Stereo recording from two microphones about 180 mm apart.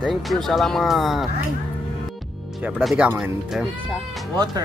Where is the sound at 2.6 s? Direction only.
5° right (ahead or behind).